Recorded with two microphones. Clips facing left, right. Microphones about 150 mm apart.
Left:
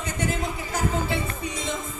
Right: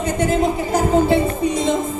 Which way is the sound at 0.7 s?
40° right (ahead or behind).